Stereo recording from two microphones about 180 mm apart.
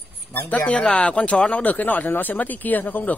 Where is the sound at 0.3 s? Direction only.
10° left (ahead or behind).